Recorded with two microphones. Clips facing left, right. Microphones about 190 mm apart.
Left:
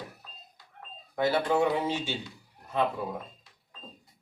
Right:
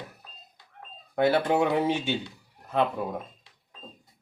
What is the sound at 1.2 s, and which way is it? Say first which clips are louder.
Speech: right 3 dB; 60° right (ahead or behind).